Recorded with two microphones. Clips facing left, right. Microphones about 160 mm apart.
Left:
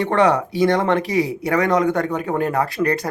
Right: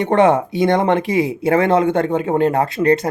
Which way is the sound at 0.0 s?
20° right (ahead or behind).